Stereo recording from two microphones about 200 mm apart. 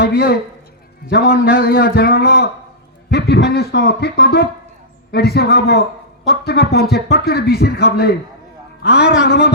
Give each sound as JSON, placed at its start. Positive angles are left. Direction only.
{"t": 0.0, "sound": "a man's voice", "side_deg": 50}
{"t": 9.0, "sound": "a man's voice", "side_deg": -5}
{"t": 9.2, "sound": "a man's voice", "side_deg": 55}